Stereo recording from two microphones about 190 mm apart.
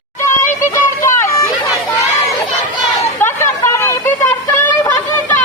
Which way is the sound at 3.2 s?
15° left (ahead or behind).